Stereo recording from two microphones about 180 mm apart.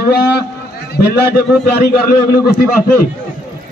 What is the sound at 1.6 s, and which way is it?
Speech, 60° left (ahead or behind).